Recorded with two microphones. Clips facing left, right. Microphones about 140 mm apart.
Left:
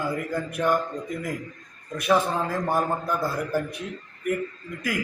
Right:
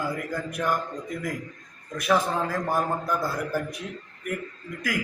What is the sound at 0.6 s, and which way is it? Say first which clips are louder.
Speech: left 3 dB; 15° left (ahead or behind).